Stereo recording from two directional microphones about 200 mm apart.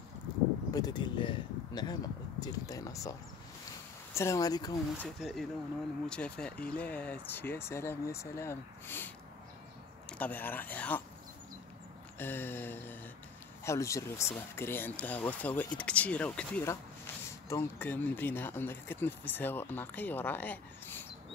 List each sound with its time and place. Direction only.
0.7 s speech: 20° left (ahead or behind)
5.0 s speech: centre (ahead or behind)
12.2 s speech: 10° left (ahead or behind)